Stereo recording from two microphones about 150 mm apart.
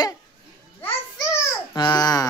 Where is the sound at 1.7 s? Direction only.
30° left (ahead or behind).